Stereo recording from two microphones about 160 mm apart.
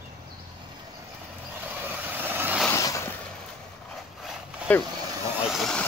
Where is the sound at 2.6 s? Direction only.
20° left (ahead or behind).